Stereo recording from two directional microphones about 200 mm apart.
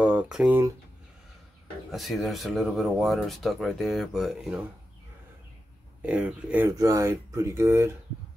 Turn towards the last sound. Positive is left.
turn(degrees=-15)  # may be behind; listen again after turning